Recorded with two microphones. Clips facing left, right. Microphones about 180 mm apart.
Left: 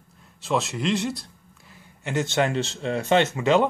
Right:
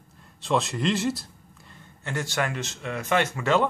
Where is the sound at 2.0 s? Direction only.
20° left (ahead or behind).